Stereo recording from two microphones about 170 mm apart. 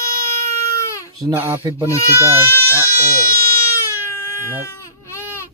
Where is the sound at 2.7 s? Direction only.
15° left (ahead or behind).